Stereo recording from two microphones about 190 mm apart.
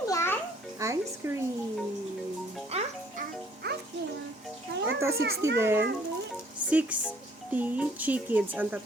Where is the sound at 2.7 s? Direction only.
35° right (ahead or behind).